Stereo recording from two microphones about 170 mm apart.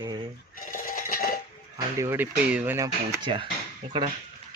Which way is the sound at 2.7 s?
25° right (ahead or behind).